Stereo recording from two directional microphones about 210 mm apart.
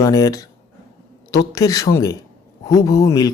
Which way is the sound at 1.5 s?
15° left (ahead or behind).